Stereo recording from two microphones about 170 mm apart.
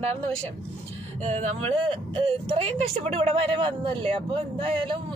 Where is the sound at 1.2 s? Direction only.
40° right (ahead or behind).